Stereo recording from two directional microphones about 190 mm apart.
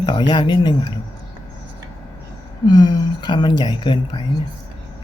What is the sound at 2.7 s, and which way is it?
Speech, 20° left (ahead or behind).